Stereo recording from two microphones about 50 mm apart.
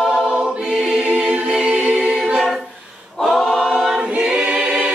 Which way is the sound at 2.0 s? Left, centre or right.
Centre.